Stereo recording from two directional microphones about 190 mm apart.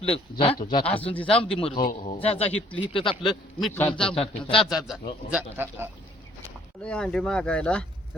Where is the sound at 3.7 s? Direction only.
10° left (ahead or behind).